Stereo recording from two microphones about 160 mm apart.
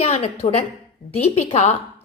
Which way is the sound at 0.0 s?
40° left (ahead or behind).